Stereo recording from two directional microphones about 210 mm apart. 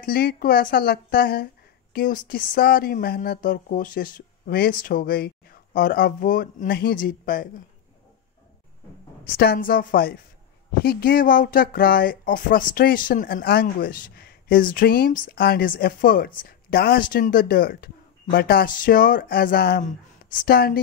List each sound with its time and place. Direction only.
0.0 s speech: 45° left (ahead or behind)
9.3 s speech: 45° left (ahead or behind)